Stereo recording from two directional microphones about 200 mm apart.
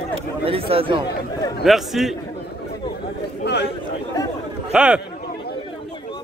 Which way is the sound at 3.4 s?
55° left (ahead or behind).